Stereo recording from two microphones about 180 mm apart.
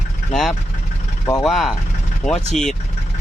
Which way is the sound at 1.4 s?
Centre (ahead or behind).